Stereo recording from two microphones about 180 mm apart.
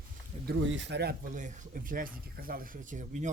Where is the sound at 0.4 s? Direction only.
85° right.